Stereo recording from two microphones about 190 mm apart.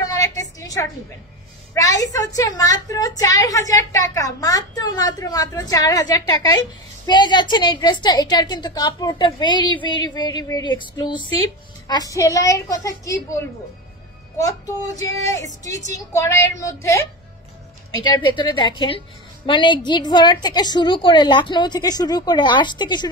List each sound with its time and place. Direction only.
0.0 s a sound: 15° left (ahead or behind)
1.7 s a woman's voice: 15° left (ahead or behind)
15.4 s a woman's voice: 40° right (ahead or behind)
16.1 s a woman's voice: 15° left (ahead or behind)
18.0 s a woman's voice: 25° left (ahead or behind)